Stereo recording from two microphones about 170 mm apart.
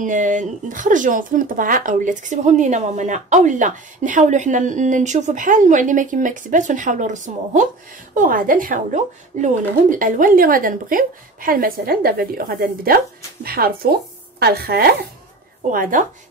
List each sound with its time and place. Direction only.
0.0 s a woman's voice: 50° right (ahead or behind); by 14.9 s 65° right (ahead or behind)
15.7 s speech: 55° right (ahead or behind)